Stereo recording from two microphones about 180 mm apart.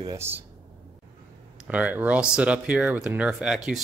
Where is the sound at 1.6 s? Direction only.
5° right (ahead or behind).